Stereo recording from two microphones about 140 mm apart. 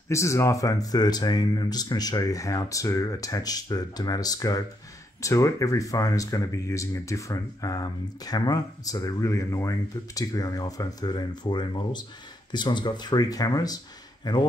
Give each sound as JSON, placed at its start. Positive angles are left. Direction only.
{"t": 0.1, "sound": "speech", "side_deg": 20}